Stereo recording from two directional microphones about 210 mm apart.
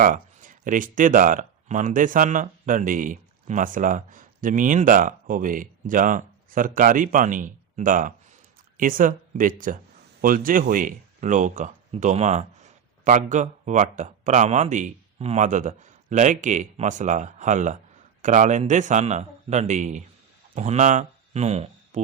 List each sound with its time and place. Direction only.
0.0 s speech: 40° right (ahead or behind)